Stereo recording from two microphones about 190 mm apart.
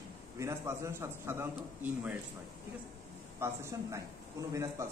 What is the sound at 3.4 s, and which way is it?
Speech, 15° right (ahead or behind).